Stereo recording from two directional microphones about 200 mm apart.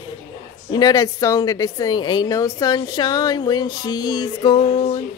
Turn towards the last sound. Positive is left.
turn(degrees=25)  # may be behind; listen again after turning